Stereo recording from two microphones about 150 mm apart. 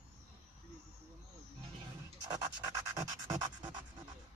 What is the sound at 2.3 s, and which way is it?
Music, 25° right (ahead or behind).